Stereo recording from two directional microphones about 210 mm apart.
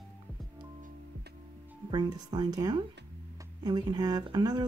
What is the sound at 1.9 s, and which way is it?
Speech, 20° right (ahead or behind).